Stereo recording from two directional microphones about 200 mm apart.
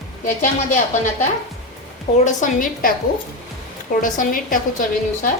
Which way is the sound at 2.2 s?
40° left (ahead or behind).